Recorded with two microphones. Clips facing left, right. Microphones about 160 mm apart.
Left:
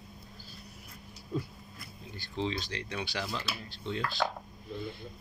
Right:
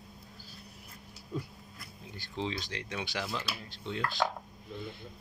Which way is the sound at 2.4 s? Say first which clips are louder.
Left 2 dB; 15° right (ahead or behind).